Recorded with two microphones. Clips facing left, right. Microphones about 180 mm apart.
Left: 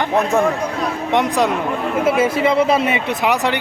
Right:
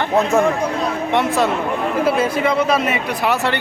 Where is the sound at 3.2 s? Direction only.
15° left (ahead or behind).